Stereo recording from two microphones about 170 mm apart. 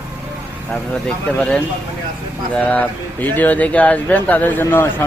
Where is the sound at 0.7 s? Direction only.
5° left (ahead or behind).